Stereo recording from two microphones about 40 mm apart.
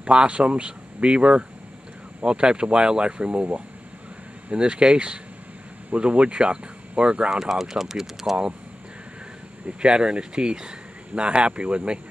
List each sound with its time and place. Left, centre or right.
0.0 s speech: right
7.4 s speech: centre
9.7 s speech: right